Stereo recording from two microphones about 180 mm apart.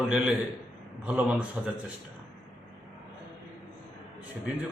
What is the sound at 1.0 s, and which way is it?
Speech, 10° right (ahead or behind).